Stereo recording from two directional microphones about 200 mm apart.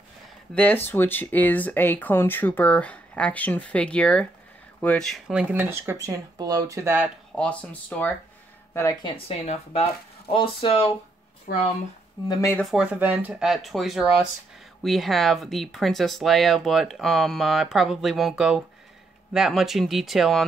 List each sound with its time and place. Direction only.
0.6 s speech: 10° left (ahead or behind); by 7.1 s 10° right (ahead or behind)
7.3 s speech: 5° left (ahead or behind)
8.7 s speech: 15° left (ahead or behind)
9.1 s speech: 30° left (ahead or behind)
11.5 s speech: 50° left (ahead or behind)
12.3 s speech: 15° left (ahead or behind)
12.7 s speech: 5° right (ahead or behind)